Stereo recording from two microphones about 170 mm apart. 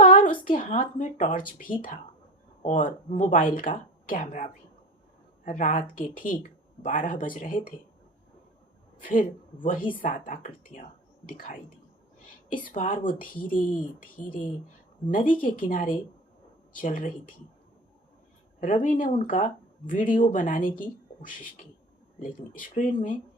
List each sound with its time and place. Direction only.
0.0 s speech: 55° left (ahead or behind)
5.5 s speech: 50° left (ahead or behind)
9.0 s speech: 55° left (ahead or behind)
18.6 s speech: 50° left (ahead or behind)
22.2 s speech: 50° left (ahead or behind)